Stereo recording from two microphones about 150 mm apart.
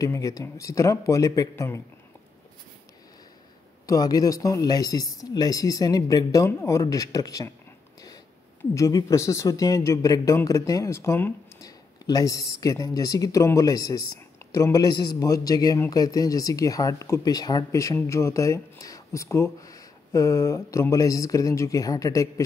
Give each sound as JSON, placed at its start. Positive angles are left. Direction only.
{"t": 0.0, "sound": "a man's voice", "side_deg": 20}
{"t": 3.8, "sound": "a man's voice", "side_deg": 25}
{"t": 8.7, "sound": "a man's voice", "side_deg": 20}